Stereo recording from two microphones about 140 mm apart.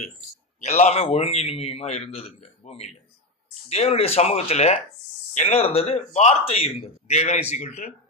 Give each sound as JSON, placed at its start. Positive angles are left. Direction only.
{"t": 0.6, "sound": "a man's voice", "side_deg": 55}